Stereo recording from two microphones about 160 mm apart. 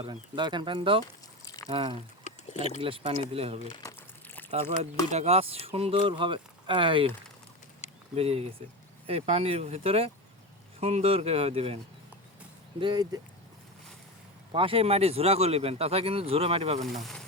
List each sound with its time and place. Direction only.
0.0 s speech: 25° right (ahead or behind)
1.5 s pour: 20° left (ahead or behind)
1.7 s speech: 35° right (ahead or behind)
3.7 s speech: 25° left (ahead or behind)
3.9 s a sound: 10° left (ahead or behind)
5.1 s speech: 40° right (ahead or behind)
8.1 s speech: 40° right (ahead or behind)
12.8 s speech: 25° right (ahead or behind)
14.5 s speech: 35° right (ahead or behind)
16.8 s speech: centre (ahead or behind)